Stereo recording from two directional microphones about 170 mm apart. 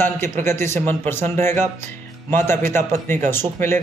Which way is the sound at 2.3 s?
15° left (ahead or behind).